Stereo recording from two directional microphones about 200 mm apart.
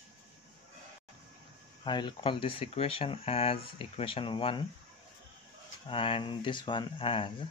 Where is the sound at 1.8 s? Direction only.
25° left (ahead or behind).